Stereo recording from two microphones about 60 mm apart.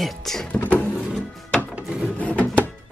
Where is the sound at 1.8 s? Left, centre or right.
Centre.